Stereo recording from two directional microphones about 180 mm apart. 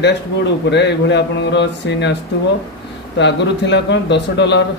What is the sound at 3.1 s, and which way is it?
A man's voice, 75° left (ahead or behind).